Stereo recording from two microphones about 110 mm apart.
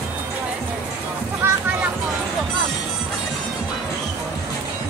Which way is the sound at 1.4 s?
20° right (ahead or behind).